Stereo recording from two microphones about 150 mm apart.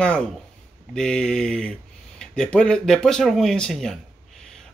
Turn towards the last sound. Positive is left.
turn(degrees=0)  # may be behind; listen again after turning